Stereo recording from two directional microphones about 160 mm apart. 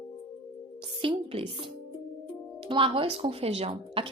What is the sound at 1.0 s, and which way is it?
Speech, 35° right (ahead or behind).